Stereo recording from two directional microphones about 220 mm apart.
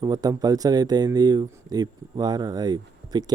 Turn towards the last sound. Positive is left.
turn(degrees=-20)  # may be behind; listen again after turning